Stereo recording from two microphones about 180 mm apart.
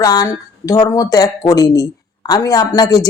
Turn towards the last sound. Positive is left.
turn(degrees=20)  # may be behind; listen again after turning